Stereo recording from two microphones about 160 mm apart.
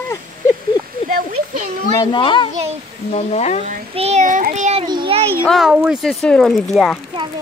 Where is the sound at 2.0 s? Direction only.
30° left (ahead or behind).